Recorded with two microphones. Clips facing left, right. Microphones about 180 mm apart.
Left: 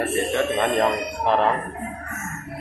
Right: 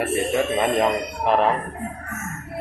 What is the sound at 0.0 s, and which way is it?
Speech, 10° right (ahead or behind).